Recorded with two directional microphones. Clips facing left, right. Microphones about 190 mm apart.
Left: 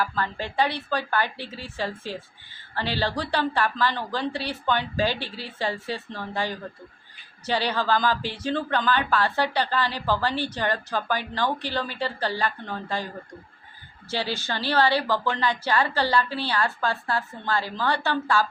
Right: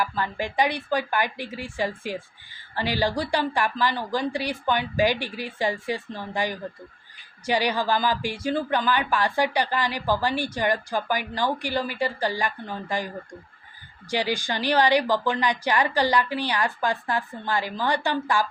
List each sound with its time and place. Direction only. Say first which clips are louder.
0.0 s a woman's voice: right 1 dB; 15° right (ahead or behind)
14.1 s a woman's voice: right 3 dB; 15° right (ahead or behind)